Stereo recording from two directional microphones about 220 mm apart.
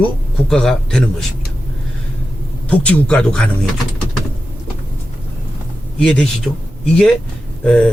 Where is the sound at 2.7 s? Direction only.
5° left (ahead or behind).